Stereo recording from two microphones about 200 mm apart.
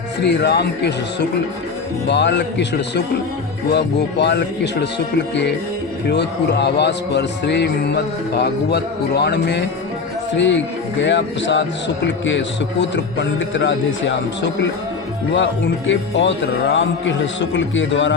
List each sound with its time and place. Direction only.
0.2 s a man's voice: 55° left (ahead or behind)
2.0 s a man's voice: 60° left (ahead or behind)